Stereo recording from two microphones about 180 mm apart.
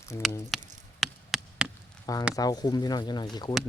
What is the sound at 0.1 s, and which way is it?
Speech, 20° left (ahead or behind).